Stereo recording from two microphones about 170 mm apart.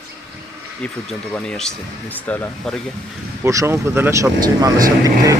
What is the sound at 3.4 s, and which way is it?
Speech, 15° right (ahead or behind).